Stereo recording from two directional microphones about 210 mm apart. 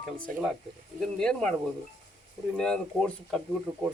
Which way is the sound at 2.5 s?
5° left (ahead or behind).